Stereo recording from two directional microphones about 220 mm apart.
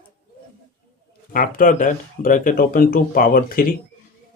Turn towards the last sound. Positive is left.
turn(degrees=40)  # may be behind; listen again after turning